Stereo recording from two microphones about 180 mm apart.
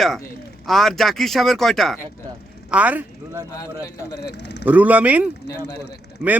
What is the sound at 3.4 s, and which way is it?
Speech, 20° left (ahead or behind).